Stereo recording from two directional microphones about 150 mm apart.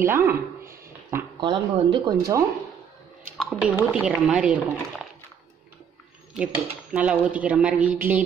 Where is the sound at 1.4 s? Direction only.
30° right (ahead or behind).